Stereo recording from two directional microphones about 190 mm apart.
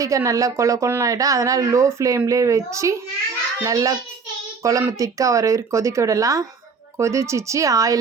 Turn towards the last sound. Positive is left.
turn(degrees=-20)  # may be behind; listen again after turning